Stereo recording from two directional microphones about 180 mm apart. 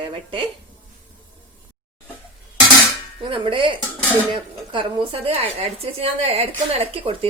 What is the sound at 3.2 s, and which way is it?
A woman's voice, 30° right (ahead or behind).